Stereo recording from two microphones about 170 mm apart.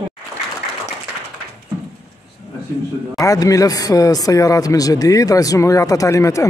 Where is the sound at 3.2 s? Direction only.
20° left (ahead or behind).